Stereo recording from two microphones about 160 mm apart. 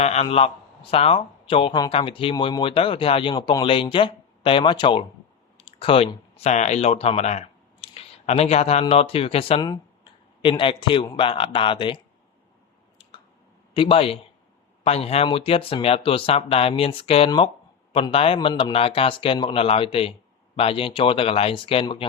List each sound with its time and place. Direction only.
0.0 s speech: 40° left (ahead or behind)
13.7 s speech: 35° left (ahead or behind)